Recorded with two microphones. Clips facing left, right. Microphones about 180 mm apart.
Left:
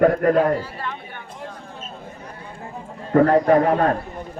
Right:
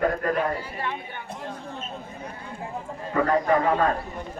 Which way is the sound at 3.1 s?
50° left (ahead or behind).